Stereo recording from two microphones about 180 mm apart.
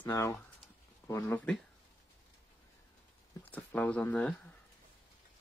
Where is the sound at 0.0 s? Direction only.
15° left (ahead or behind).